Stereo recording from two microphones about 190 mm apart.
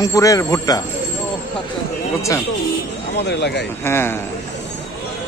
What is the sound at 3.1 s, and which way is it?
Speech, 60° left (ahead or behind).